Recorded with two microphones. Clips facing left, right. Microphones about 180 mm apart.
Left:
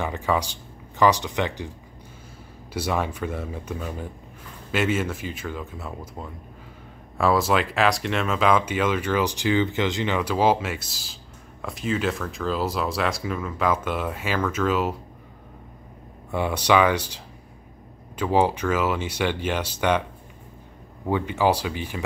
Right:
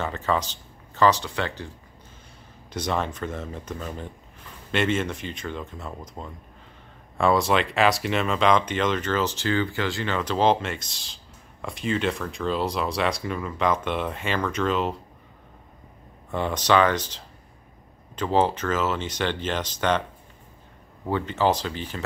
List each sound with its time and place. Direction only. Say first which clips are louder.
0.0 s speech: left 1 dB; 15° left (ahead or behind)
2.7 s speech: left 1 dB; 10° left (ahead or behind)
16.3 s speech: left 1 dB; 10° left (ahead or behind)
21.1 s speech: left 1 dB; 10° left (ahead or behind)